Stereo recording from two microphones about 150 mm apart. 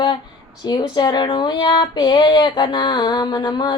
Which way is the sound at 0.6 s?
30° left (ahead or behind).